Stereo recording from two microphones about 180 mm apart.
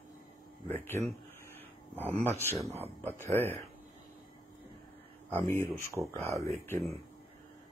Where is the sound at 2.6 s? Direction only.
35° right (ahead or behind).